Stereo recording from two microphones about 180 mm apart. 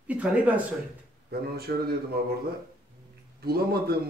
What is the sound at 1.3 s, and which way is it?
Speech, 60° right (ahead or behind).